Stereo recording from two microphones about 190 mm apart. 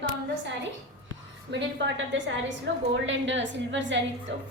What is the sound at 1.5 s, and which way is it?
A woman's voice, 75° right (ahead or behind).